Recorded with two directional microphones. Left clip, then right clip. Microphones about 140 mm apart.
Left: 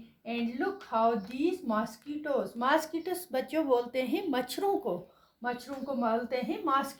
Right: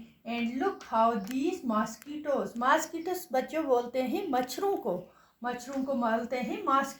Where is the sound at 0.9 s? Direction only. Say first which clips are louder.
Right 1 dB; 30° left (ahead or behind).